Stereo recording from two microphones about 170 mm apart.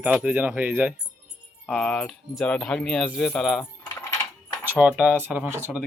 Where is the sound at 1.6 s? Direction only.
5° left (ahead or behind).